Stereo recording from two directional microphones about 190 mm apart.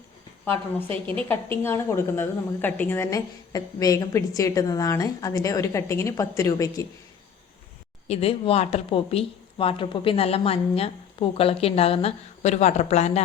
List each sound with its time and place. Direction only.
1.3 s a woman's voice: 10° left (ahead or behind)
8.0 s speech: 30° left (ahead or behind)